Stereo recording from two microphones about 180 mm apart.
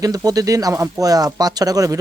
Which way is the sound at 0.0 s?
20° right (ahead or behind).